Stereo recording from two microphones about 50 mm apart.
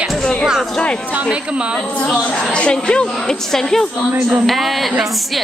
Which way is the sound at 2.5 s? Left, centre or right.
Centre.